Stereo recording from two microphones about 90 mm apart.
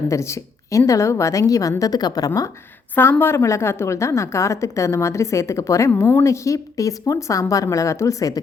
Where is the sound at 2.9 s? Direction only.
25° left (ahead or behind).